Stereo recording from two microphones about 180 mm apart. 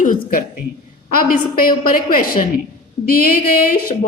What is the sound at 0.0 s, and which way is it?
A woman's voice, 50° left (ahead or behind).